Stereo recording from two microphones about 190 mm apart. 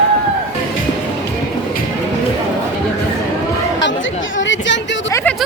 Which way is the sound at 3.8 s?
80° left.